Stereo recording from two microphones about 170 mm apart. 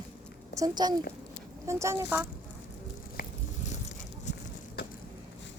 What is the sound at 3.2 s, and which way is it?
Biting, 60° left (ahead or behind).